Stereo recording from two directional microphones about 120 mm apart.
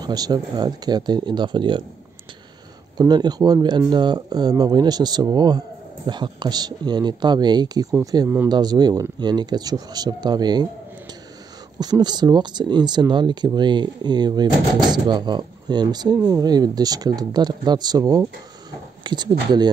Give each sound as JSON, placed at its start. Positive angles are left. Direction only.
{"t": 0.0, "sound": "speech", "side_deg": -35}
{"t": 3.0, "sound": "speech", "side_deg": -35}
{"t": 11.8, "sound": "speech", "side_deg": -35}